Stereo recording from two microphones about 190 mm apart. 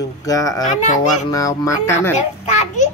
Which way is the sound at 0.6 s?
40° left (ahead or behind).